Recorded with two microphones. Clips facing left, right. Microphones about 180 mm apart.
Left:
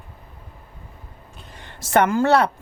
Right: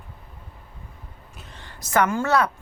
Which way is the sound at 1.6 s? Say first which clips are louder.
Left 3 dB; 25° left (ahead or behind).